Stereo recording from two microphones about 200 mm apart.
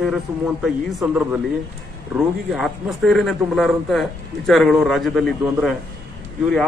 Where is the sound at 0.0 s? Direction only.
5° right (ahead or behind).